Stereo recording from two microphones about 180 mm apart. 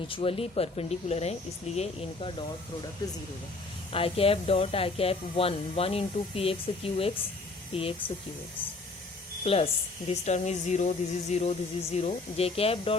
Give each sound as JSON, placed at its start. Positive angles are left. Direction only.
{"t": 0.1, "sound": "speech", "side_deg": 30}
{"t": 3.9, "sound": "speech", "side_deg": 30}
{"t": 9.4, "sound": "speech", "side_deg": 35}